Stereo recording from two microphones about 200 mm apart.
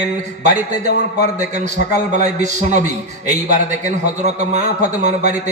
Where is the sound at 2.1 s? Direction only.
35° right (ahead or behind).